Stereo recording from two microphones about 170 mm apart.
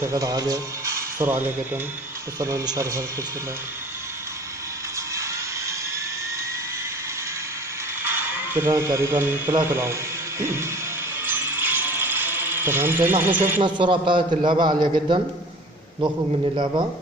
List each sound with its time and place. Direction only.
0.0 s speech: 20° right (ahead or behind)
5.1 s music: 15° right (ahead or behind)
8.0 s speech: 15° right (ahead or behind)
11.2 s mechanisms: 10° right (ahead or behind)
13.6 s a man's voice: 30° right (ahead or behind)